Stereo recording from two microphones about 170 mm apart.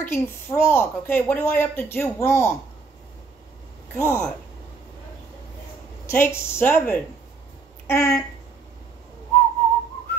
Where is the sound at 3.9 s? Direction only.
15° left (ahead or behind).